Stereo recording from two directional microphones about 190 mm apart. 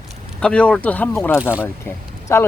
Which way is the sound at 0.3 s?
5° left (ahead or behind).